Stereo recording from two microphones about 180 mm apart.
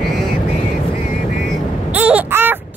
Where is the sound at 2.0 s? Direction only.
10° right (ahead or behind).